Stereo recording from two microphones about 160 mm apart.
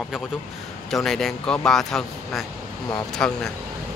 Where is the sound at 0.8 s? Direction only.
Centre (ahead or behind).